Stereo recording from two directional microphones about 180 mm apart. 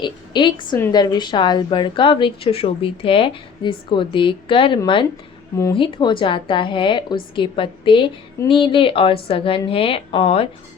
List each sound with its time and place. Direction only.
0.0 s a woman's voice: 25° left (ahead or behind)